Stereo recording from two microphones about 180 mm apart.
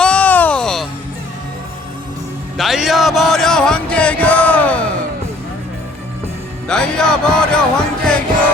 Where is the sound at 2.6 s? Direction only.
Centre (ahead or behind).